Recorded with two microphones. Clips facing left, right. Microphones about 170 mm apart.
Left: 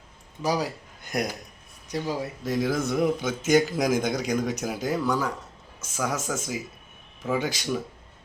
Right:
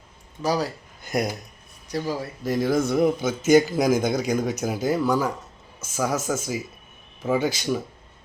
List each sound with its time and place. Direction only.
0.4 s speech: 15° left (ahead or behind)
1.0 s a man's voice: 5° right (ahead or behind)
1.9 s speech: 20° left (ahead or behind)
2.4 s a man's voice: centre (ahead or behind)